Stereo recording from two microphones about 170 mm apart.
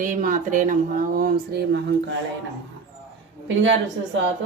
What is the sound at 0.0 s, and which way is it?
Speech, 50° right (ahead or behind).